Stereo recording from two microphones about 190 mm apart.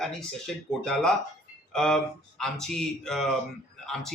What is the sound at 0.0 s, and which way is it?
Speech, 5° left (ahead or behind).